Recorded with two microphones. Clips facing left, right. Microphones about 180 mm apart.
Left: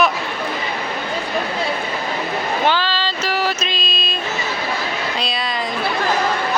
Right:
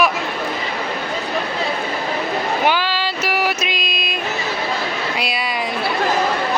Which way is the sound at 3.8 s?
25° left (ahead or behind).